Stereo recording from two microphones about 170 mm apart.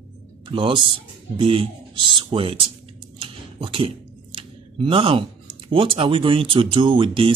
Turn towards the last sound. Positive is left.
turn(degrees=-30)  # may be behind; listen again after turning